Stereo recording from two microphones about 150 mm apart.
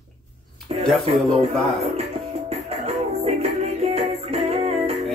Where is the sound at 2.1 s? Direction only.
40° right (ahead or behind).